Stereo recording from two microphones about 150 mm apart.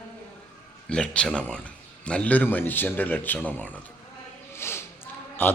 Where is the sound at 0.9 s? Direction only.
5° left (ahead or behind).